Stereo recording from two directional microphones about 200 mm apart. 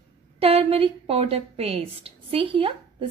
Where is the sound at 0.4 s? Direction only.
30° right (ahead or behind).